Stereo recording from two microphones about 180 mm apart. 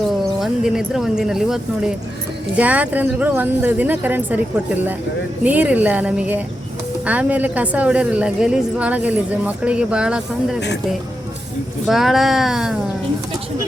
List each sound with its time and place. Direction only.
0.3 s a woman's voice: centre (ahead or behind)
5.4 s a woman's voice: 10° right (ahead or behind)
11.9 s speech: centre (ahead or behind)